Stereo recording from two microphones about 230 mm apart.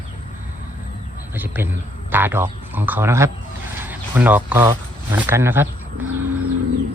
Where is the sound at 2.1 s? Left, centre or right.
Centre.